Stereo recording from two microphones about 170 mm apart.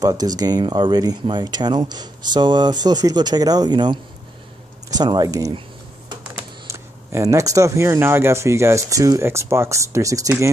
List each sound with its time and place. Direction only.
0.0 s speech: 20° right (ahead or behind)